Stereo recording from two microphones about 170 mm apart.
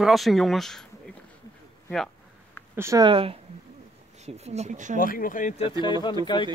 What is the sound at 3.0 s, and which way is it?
Speech, 30° right (ahead or behind).